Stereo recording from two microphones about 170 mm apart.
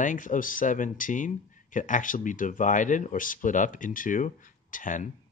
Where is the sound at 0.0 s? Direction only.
50° left (ahead or behind).